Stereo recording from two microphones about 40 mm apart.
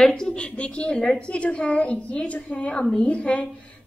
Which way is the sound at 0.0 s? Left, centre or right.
Centre.